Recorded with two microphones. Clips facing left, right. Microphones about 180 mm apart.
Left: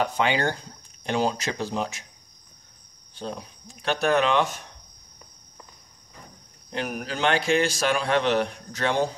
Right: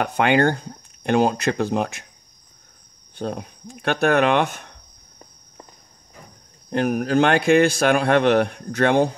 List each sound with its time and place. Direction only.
0.0 s a man's voice: 55° right (ahead or behind)
3.2 s a man's voice: 55° right (ahead or behind)
6.7 s a man's voice: 50° right (ahead or behind)